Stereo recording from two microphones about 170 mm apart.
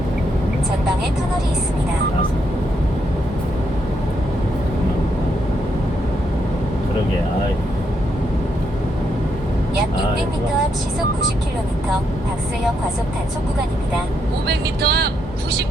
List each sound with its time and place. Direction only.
14.4 s speech: 70° right (ahead or behind)